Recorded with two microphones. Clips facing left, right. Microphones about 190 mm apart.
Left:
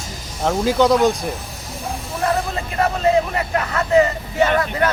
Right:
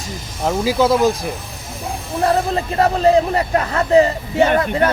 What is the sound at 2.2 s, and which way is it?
Speech, 30° right (ahead or behind).